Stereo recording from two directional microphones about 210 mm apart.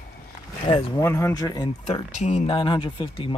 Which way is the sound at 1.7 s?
35° left (ahead or behind).